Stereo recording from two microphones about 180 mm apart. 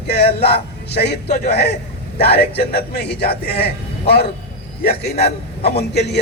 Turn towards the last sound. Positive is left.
turn(degrees=65)  # may be behind; listen again after turning